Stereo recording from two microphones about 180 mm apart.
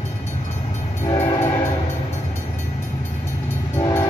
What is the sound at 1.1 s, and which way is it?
Train, 25° left (ahead or behind).